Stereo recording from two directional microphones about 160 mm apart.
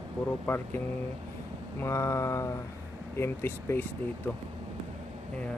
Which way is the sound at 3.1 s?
15° left (ahead or behind).